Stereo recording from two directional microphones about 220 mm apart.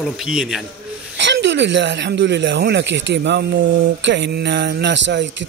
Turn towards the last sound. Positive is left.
turn(degrees=-55)  # may be behind; listen again after turning